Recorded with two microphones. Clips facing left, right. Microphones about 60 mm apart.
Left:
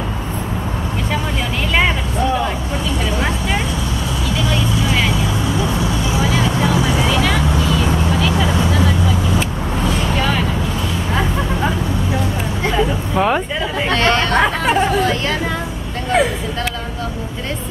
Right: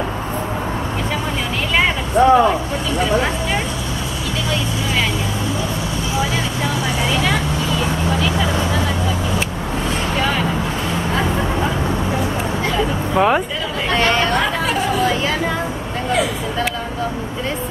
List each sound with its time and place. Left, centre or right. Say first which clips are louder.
2.1 s speech: right 10 dB; right
13.1 s speech: right 3 dB; centre
14.3 s speech: left 3 dB; left